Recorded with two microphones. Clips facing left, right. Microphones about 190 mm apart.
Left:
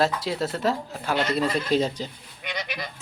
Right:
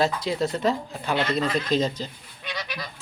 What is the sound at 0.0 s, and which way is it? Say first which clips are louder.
Speech: right 1 dB; centre (ahead or behind).